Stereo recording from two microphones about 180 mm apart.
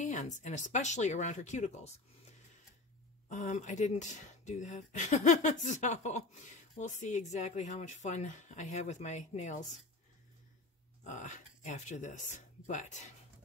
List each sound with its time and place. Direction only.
0.0 s speech: 40° left (ahead or behind)
3.3 s speech: 40° left (ahead or behind)
11.1 s speech: 45° left (ahead or behind)